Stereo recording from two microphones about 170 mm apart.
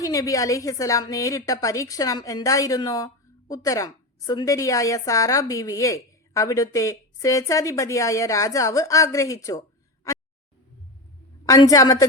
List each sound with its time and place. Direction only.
0.0 s a woman's voice: 20° left (ahead or behind)
11.4 s a woman's voice: 20° left (ahead or behind)